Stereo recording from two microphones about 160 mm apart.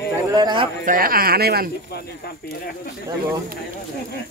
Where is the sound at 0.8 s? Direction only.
60° right (ahead or behind).